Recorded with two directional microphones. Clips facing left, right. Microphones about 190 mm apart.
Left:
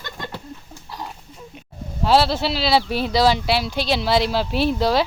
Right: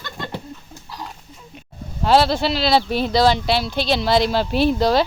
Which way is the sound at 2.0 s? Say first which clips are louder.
Right 2 dB; 5° left (ahead or behind).